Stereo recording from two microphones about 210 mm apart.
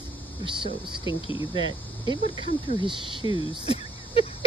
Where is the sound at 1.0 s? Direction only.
25° left (ahead or behind).